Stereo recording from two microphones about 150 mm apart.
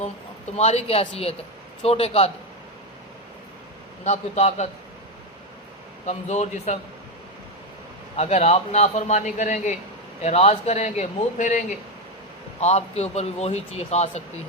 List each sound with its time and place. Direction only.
0.5 s speech: 45° left (ahead or behind)
4.0 s a man's voice: 45° left (ahead or behind)
6.1 s a man's voice: 50° left (ahead or behind)
8.1 s a man's voice: 45° left (ahead or behind)
10.2 s a man's voice: 45° left (ahead or behind)